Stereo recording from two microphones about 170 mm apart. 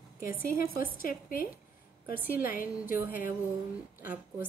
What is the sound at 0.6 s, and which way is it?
Speech, 60° left (ahead or behind).